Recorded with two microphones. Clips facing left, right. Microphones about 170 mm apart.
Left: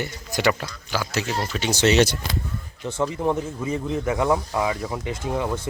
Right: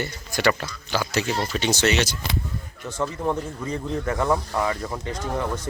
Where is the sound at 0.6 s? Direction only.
5° left (ahead or behind).